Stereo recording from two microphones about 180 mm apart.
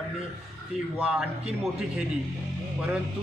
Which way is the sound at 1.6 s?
Centre (ahead or behind).